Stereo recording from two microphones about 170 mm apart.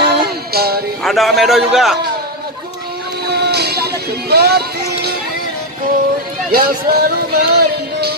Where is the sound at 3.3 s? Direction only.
70° right (ahead or behind).